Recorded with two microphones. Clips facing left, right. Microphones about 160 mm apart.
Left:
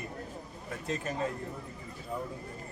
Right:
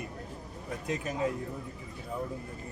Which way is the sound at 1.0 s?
15° right (ahead or behind).